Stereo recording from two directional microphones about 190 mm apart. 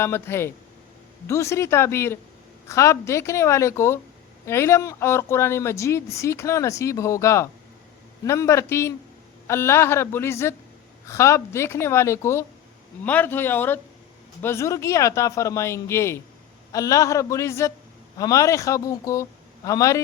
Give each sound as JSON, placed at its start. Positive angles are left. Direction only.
{"t": 0.0, "sound": "speech", "side_deg": 15}